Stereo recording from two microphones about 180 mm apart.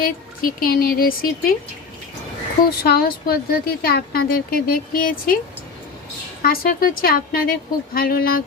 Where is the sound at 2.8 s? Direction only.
55° left (ahead or behind).